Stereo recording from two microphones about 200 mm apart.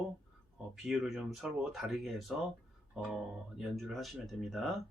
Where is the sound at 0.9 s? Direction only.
Centre (ahead or behind).